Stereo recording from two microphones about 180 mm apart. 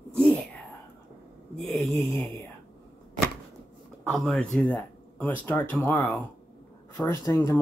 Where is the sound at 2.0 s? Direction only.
10° left (ahead or behind).